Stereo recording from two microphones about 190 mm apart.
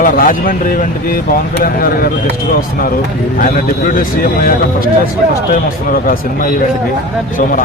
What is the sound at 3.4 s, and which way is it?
Speech, 45° left (ahead or behind).